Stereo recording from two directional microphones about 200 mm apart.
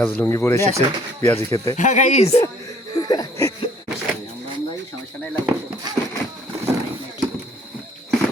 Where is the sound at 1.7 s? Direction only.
35° left (ahead or behind).